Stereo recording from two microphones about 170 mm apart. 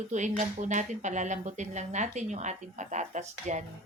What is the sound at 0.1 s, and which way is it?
Speech, 45° right (ahead or behind).